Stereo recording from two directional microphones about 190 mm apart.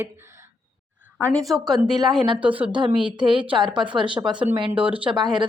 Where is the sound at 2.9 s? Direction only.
5° right (ahead or behind).